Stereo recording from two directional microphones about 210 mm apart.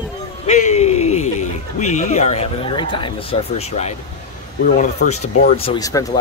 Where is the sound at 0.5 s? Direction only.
30° left (ahead or behind).